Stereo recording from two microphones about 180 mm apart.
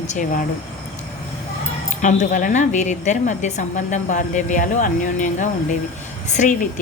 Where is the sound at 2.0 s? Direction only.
45° left (ahead or behind).